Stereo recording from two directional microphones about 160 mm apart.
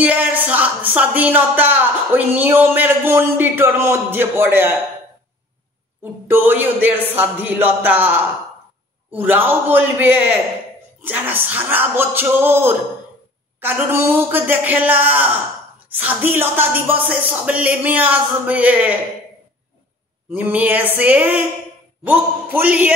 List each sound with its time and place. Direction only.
0.0 s speech: 10° right (ahead or behind)
6.2 s speech: 15° right (ahead or behind)
20.2 s speech: 10° right (ahead or behind)